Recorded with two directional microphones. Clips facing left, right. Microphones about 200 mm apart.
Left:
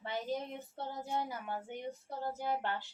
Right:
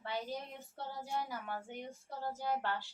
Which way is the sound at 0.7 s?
20° left (ahead or behind).